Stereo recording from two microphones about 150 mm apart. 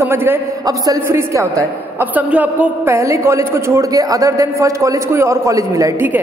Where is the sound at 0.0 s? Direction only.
15° right (ahead or behind).